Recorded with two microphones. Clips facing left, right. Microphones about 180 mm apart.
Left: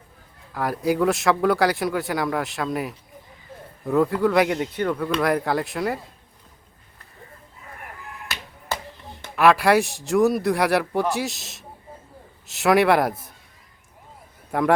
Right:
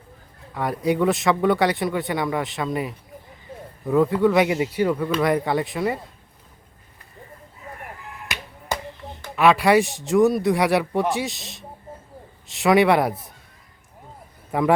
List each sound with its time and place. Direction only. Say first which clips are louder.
0.5 s speech: even; centre (ahead or behind)
8.3 s finger snapping: right 2 dB; 15° right (ahead or behind)
9.3 s speech: right 1 dB; centre (ahead or behind)
14.5 s speech: right 1 dB; centre (ahead or behind)